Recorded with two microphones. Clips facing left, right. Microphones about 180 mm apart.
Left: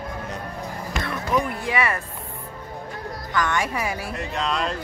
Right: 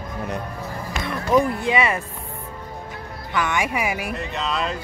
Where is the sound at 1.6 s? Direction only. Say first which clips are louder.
Right 3 dB; 20° right (ahead or behind).